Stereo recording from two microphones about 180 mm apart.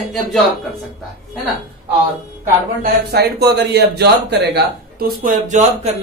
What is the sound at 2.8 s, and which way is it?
A man's voice, 65° right (ahead or behind).